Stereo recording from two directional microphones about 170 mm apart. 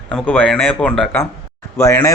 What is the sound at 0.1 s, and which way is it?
A man's voice, 10° left (ahead or behind).